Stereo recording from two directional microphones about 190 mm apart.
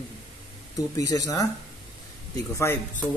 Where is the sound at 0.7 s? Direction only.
20° left (ahead or behind).